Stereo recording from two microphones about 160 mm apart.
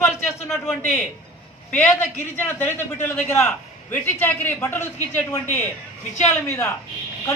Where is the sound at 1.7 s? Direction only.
10° left (ahead or behind).